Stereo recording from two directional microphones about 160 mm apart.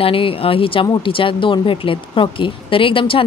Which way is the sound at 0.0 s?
35° left (ahead or behind).